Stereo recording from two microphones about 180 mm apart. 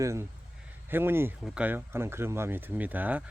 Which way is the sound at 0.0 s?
15° right (ahead or behind).